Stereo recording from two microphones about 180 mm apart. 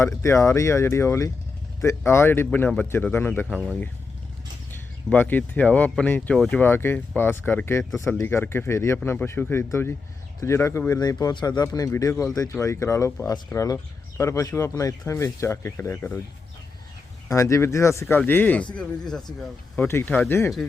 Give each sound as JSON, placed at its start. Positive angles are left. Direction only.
{"t": 0.0, "sound": "speech", "side_deg": 15}
{"t": 4.7, "sound": "speech", "side_deg": 10}
{"t": 17.2, "sound": "speech", "side_deg": 15}